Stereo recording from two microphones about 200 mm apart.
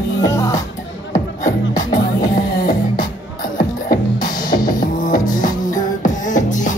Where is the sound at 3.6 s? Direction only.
45° left (ahead or behind).